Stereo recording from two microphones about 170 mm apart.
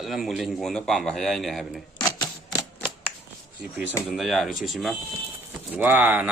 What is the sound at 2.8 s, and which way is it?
Typewriter, 10° left (ahead or behind).